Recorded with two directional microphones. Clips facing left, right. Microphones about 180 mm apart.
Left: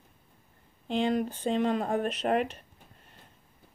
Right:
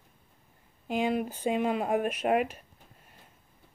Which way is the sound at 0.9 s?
10° right (ahead or behind).